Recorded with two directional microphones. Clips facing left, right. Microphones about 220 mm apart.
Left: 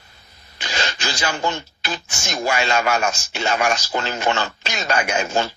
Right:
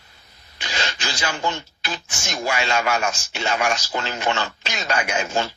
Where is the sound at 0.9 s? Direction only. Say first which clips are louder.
Left 3 dB; 45° left (ahead or behind).